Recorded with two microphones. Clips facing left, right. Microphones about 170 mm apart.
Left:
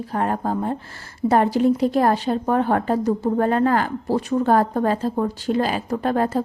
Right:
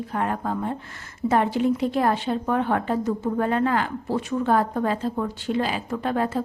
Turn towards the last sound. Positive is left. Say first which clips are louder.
# left 4 dB
turn(degrees=40)  # may be behind; listen again after turning